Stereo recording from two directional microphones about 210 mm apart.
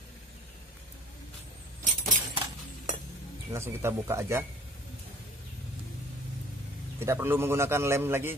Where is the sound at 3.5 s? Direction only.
10° right (ahead or behind).